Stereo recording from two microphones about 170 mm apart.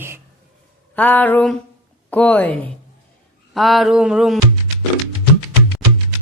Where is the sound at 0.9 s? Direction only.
10° left (ahead or behind).